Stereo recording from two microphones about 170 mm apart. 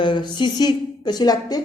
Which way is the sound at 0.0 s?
30° left (ahead or behind).